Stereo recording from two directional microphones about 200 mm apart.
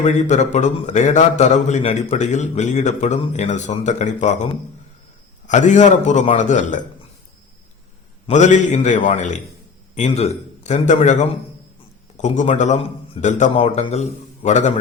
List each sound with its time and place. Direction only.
0.0 s a man's voice: 35° left (ahead or behind)
5.5 s a man's voice: 35° left (ahead or behind)
8.3 s a man's voice: 40° left (ahead or behind)